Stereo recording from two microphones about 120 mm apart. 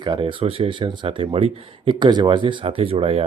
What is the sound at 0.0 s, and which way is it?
Speech, 40° right (ahead or behind).